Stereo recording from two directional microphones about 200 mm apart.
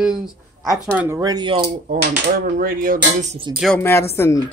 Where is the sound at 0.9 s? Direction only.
15° right (ahead or behind).